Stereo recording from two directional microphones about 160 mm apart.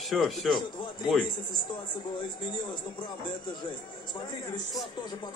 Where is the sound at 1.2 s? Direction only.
30° left (ahead or behind).